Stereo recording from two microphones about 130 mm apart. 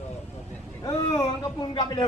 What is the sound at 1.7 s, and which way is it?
Speech, 35° left (ahead or behind).